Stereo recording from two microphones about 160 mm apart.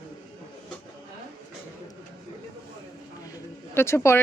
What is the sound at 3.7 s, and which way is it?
Speech, 15° left (ahead or behind).